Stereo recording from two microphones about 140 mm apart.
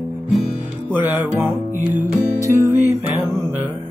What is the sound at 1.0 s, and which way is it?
Music, 15° right (ahead or behind).